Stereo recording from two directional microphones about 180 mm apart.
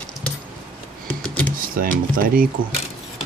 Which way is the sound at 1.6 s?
50° right (ahead or behind).